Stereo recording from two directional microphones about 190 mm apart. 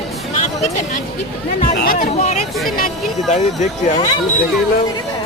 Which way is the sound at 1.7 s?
50° left (ahead or behind).